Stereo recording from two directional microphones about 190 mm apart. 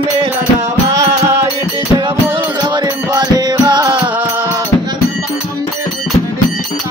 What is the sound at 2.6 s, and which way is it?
Music, 20° right (ahead or behind).